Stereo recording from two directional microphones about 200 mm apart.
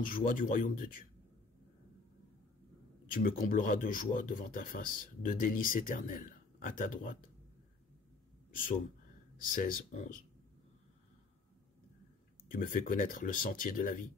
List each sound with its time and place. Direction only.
0.0 s speech: 45° left (ahead or behind)
3.1 s speech: 45° left (ahead or behind)
8.5 s speech: 40° left (ahead or behind)
12.4 s speech: 45° left (ahead or behind)